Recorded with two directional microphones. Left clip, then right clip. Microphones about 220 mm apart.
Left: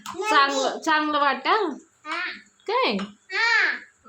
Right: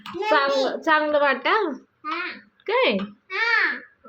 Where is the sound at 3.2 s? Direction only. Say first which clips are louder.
Left 1 dB; 20° left (ahead or behind).